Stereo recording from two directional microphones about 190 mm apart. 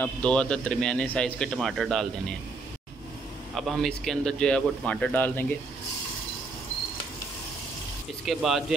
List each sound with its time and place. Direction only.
0.0 s a man's voice: 5° left (ahead or behind)
3.5 s a man's voice: centre (ahead or behind)
8.3 s a man's voice: centre (ahead or behind)